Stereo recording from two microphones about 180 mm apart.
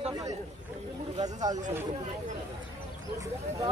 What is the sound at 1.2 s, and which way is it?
Speech, 20° right (ahead or behind).